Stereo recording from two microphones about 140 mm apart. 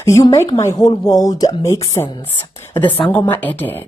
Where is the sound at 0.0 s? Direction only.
20° left (ahead or behind).